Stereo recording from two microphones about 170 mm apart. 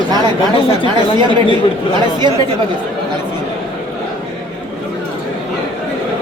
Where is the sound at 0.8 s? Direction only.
25° right (ahead or behind).